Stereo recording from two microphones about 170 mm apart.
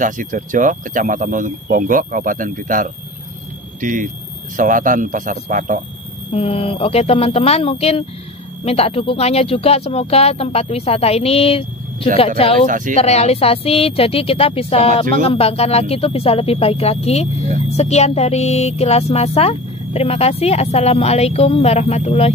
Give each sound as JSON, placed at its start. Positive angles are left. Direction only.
{"t": 0.0, "sound": "speech", "side_deg": -50}
{"t": 6.3, "sound": "music", "side_deg": 35}
{"t": 12.6, "sound": "speech", "side_deg": -50}
{"t": 12.9, "sound": "music", "side_deg": 40}